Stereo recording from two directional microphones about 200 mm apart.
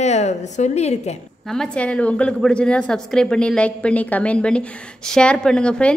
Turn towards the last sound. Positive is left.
turn(degrees=5)  # may be behind; listen again after turning